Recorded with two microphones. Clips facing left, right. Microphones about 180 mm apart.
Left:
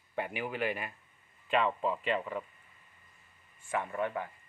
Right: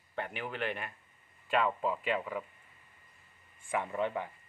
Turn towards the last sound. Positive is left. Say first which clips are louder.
# right 1 dB
turn(degrees=-20)  # may be behind; listen again after turning